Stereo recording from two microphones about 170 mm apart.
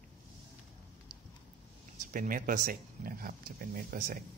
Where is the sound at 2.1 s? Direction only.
55° right (ahead or behind).